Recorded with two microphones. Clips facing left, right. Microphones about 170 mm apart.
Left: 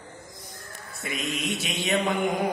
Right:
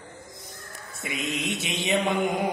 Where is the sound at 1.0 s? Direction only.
20° right (ahead or behind).